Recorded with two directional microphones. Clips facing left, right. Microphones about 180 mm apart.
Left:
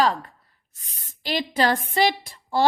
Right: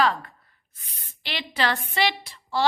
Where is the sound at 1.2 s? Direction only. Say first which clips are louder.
Left 5 dB; 45° left (ahead or behind).